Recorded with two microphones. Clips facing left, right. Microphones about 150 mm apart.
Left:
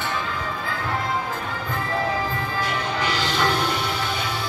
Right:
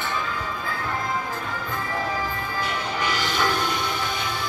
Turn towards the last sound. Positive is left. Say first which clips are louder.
# left 2 dB
turn(degrees=25)  # may be behind; listen again after turning